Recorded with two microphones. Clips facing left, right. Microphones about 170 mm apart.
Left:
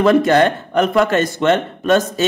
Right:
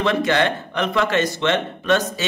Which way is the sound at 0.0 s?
45° left (ahead or behind).